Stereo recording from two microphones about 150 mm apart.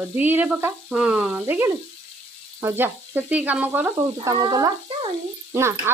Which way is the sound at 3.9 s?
25° right (ahead or behind).